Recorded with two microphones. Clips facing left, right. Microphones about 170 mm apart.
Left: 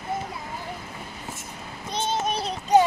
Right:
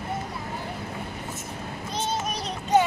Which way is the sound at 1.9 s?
30° left (ahead or behind).